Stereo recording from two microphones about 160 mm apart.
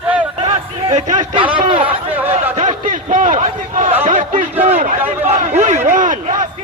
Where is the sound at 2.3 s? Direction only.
50° right (ahead or behind).